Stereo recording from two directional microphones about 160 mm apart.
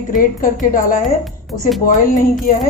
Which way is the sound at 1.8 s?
55° left (ahead or behind).